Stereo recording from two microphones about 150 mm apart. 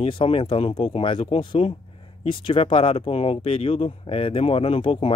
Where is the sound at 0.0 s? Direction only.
35° left (ahead or behind).